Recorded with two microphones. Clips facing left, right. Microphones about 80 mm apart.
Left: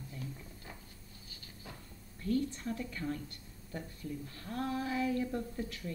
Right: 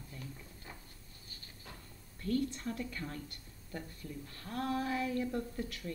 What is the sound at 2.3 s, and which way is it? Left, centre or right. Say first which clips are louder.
Female singing: left 1 dB; centre.